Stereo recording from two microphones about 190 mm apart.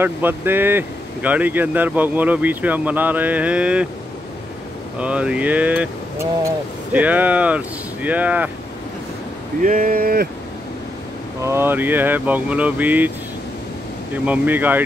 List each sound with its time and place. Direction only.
0.0 s speech: 10° right (ahead or behind)
4.9 s speech: 5° right (ahead or behind)
6.9 s speech: 10° right (ahead or behind)
9.6 s speech: 45° right (ahead or behind)
11.4 s speech: 10° right (ahead or behind)
14.1 s speech: 10° right (ahead or behind)